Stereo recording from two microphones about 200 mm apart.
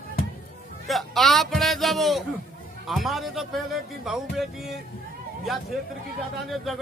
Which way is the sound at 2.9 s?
Centre (ahead or behind).